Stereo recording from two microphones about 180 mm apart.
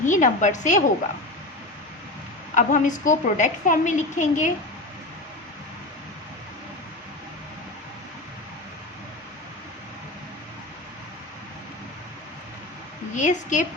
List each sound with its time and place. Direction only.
0.0 s a woman's voice: 45° left (ahead or behind)
2.6 s a woman's voice: 45° left (ahead or behind)
13.1 s a woman's voice: 45° left (ahead or behind)